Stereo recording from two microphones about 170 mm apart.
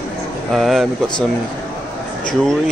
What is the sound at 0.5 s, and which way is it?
Speech, centre (ahead or behind).